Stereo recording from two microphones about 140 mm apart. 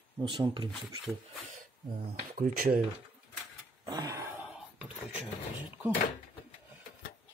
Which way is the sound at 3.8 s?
25° right (ahead or behind).